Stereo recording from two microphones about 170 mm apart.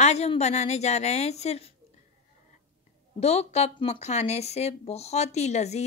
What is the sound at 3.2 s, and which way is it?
Speech, 40° left (ahead or behind).